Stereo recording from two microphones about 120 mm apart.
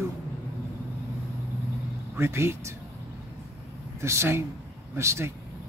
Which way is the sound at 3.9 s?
20° right (ahead or behind).